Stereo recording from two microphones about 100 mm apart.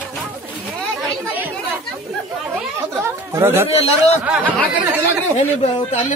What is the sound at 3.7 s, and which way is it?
Speech, 90° left.